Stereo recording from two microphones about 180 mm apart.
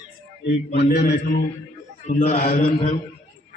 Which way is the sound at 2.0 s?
45° left (ahead or behind).